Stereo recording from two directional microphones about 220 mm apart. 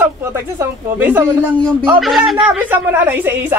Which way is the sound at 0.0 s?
10° right (ahead or behind).